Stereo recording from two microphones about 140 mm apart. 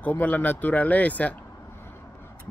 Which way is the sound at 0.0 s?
10° left (ahead or behind).